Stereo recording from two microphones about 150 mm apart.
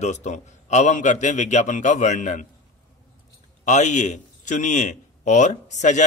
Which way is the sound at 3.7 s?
55° left (ahead or behind).